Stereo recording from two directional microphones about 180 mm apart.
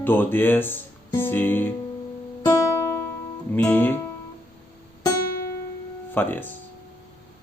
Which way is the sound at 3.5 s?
10° left (ahead or behind).